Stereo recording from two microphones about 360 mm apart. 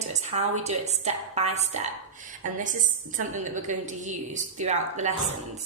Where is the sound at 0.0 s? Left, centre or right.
Centre.